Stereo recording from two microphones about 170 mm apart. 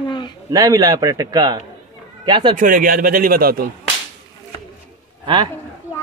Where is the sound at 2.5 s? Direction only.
50° right (ahead or behind).